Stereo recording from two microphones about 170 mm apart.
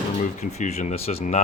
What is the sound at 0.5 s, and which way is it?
Speech, 40° left (ahead or behind).